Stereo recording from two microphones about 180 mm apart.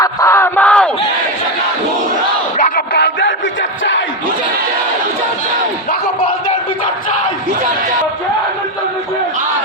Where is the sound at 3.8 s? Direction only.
90° left.